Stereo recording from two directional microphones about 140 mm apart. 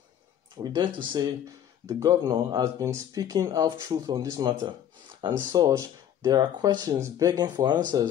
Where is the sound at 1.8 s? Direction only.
25° right (ahead or behind).